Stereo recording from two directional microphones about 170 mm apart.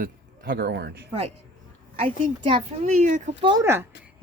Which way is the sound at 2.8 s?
45° right (ahead or behind).